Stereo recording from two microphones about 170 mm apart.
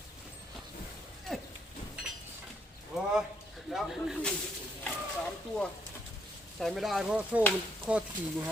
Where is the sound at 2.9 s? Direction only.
Centre (ahead or behind).